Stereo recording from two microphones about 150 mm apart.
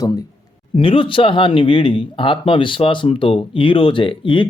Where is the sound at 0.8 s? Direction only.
35° left (ahead or behind).